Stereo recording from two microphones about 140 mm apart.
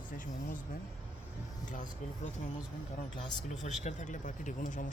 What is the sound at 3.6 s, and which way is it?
Speech, 60° left (ahead or behind).